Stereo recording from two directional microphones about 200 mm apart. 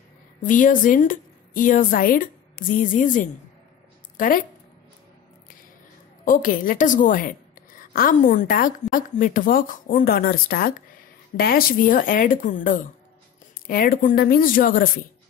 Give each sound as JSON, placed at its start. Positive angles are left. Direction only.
{"t": 0.4, "sound": "a woman's voice", "side_deg": 40}
{"t": 6.2, "sound": "a woman's voice", "side_deg": 40}